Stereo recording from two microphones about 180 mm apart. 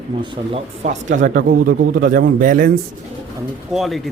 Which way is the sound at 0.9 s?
45° right (ahead or behind).